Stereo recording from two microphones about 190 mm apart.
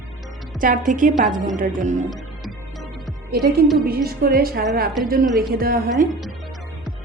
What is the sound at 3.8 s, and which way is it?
A woman's voice, 55° right (ahead or behind).